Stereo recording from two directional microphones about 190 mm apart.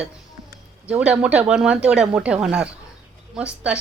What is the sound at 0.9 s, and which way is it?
A woman's voice, 5° right (ahead or behind).